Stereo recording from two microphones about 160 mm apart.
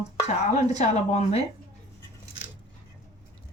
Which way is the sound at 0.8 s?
45° left (ahead or behind).